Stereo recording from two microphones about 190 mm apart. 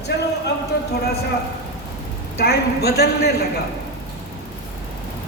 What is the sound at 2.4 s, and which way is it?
Speech, 55° left (ahead or behind).